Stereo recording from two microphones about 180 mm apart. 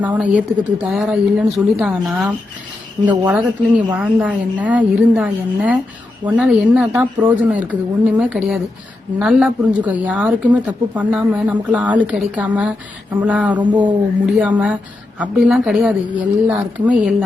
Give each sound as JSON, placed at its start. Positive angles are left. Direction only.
{"t": 0.0, "sound": "a woman's voice", "side_deg": -10}
{"t": 13.6, "sound": "speech", "side_deg": -25}
{"t": 14.3, "sound": "a woman's voice", "side_deg": -5}